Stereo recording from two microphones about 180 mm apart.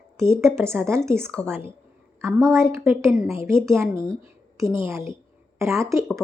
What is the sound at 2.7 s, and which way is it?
A woman's voice, 15° right (ahead or behind).